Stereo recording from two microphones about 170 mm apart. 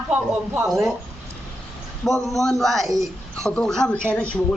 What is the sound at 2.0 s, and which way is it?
A man's voice, centre (ahead or behind).